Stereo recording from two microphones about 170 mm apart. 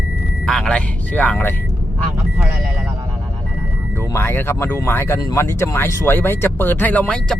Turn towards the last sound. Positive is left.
turn(degrees=5)  # may be behind; listen again after turning